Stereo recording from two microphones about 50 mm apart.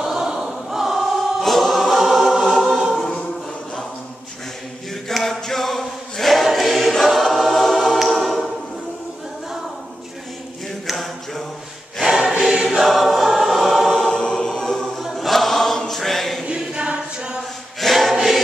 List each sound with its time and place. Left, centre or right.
0.0 s choir: centre
5.1 s choir: centre
10.9 s choir: centre
12.0 s choir: centre
16.4 s choir: centre
17.7 s choir: centre